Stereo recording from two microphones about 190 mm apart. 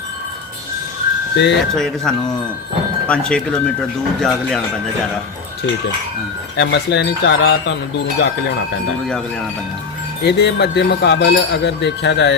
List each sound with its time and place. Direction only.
1.4 s speech: 65° left (ahead or behind)
1.7 s speech: centre (ahead or behind)
6.6 s speech: 65° left (ahead or behind)
10.2 s speech: 65° left (ahead or behind)